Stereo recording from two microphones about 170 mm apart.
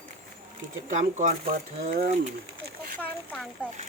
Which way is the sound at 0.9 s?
50° right (ahead or behind).